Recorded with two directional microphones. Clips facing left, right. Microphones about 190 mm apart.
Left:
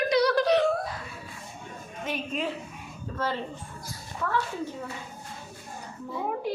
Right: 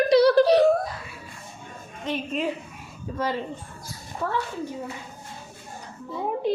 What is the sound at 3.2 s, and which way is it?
Speech, 15° right (ahead or behind).